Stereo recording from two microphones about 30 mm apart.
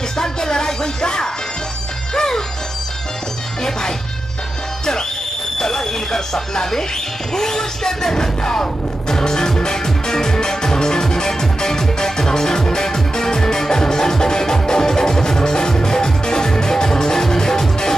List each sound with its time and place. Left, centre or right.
0.2 s music: left
5.6 s speech: centre
7.3 s a sound: centre
9.1 s music: left